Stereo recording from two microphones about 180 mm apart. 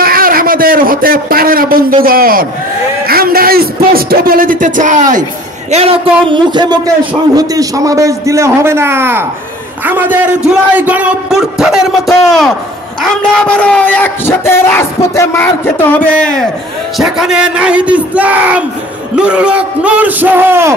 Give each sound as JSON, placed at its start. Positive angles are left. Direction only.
{"t": 0.0, "sound": "a sound", "side_deg": -55}
{"t": 3.1, "sound": "music", "side_deg": -55}
{"t": 5.7, "sound": "a man's voice", "side_deg": -35}
{"t": 17.0, "sound": "a man's voice", "side_deg": -5}